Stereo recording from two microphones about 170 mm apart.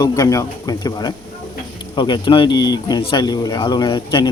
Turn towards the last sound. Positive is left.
turn(degrees=25)  # may be behind; listen again after turning